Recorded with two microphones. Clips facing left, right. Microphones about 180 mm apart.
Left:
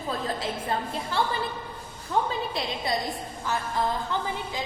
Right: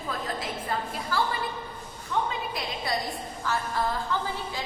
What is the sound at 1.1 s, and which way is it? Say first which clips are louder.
Speech: even; 25° left (ahead or behind).